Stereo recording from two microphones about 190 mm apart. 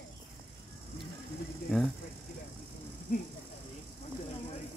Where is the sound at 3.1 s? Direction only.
45° left (ahead or behind).